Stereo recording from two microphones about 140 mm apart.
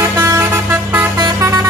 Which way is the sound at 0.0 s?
20° right (ahead or behind).